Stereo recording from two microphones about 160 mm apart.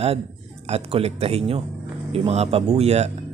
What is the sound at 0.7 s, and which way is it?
A man's voice, 40° right (ahead or behind).